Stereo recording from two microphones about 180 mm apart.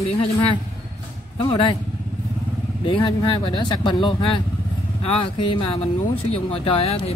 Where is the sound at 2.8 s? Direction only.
30° left (ahead or behind).